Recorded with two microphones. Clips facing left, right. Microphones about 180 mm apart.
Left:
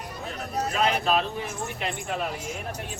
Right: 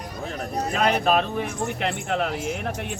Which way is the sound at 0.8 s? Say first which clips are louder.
Right 3 dB; 55° right (ahead or behind).